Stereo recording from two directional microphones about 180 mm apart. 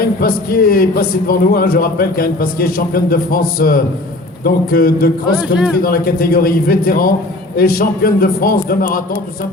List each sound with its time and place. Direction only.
0.0 s speech: 55° left (ahead or behind)
5.4 s speech: 5° right (ahead or behind)
5.8 s speech: 55° left (ahead or behind)